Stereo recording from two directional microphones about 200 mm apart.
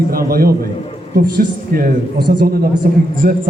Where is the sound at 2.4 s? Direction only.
50° right (ahead or behind).